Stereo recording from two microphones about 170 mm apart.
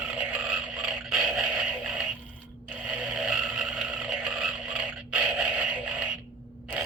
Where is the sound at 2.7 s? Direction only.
5° right (ahead or behind).